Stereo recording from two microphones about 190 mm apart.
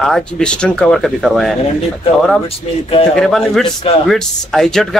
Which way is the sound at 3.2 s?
Centre (ahead or behind).